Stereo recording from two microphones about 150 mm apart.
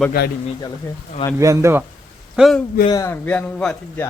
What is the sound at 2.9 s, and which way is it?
Speech, 20° left (ahead or behind).